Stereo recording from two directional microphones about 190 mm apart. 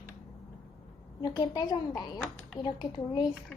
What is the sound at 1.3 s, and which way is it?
A woman's voice, 20° left (ahead or behind).